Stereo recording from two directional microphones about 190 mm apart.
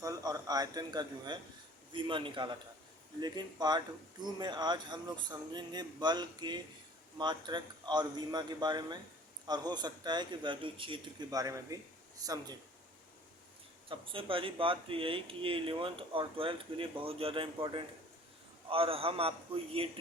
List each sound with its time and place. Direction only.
0.0 s a man's voice: 20° right (ahead or behind)
13.8 s speech: 25° right (ahead or behind)